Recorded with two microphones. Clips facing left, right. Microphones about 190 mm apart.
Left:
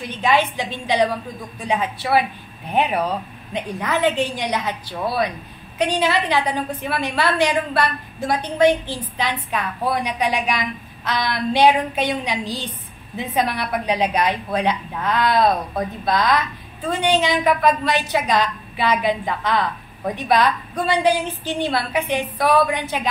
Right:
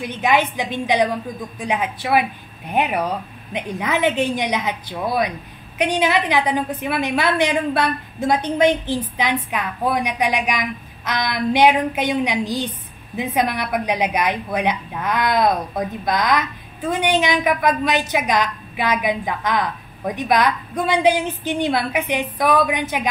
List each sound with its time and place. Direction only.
0.1 s a woman's voice: 15° right (ahead or behind)